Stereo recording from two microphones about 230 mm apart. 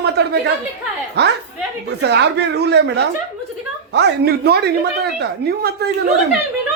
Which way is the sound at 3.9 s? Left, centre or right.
Right.